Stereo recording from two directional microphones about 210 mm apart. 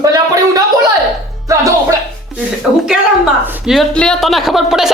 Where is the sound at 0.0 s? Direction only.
15° right (ahead or behind).